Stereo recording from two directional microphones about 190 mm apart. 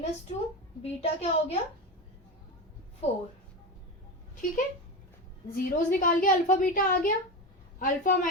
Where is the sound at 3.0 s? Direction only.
35° left (ahead or behind).